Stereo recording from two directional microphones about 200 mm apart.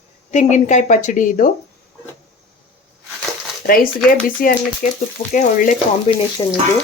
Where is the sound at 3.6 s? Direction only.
45° left (ahead or behind).